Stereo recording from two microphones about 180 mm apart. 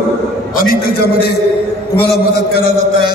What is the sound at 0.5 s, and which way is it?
Speech, 50° left (ahead or behind).